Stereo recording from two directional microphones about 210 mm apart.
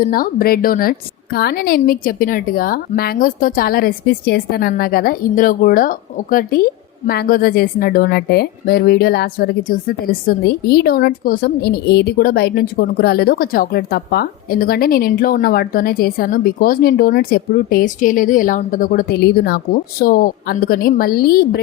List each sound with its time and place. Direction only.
0.0 s a woman's voice: 45° left (ahead or behind)